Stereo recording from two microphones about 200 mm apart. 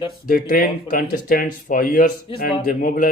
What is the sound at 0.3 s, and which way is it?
Speech, 45° left (ahead or behind).